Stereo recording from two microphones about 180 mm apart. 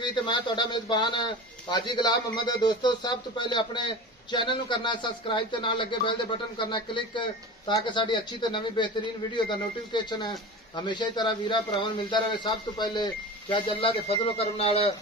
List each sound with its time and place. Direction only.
0.0 s a man's voice: 25° left (ahead or behind)